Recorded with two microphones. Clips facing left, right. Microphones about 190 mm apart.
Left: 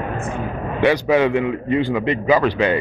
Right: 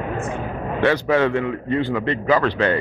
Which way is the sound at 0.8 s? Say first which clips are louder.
Left 2 dB; 15° left (ahead or behind).